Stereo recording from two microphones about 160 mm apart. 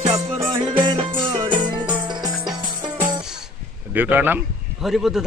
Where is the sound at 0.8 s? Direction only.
30° right (ahead or behind).